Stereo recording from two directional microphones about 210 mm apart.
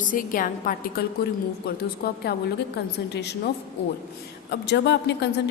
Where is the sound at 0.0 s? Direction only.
40° left (ahead or behind).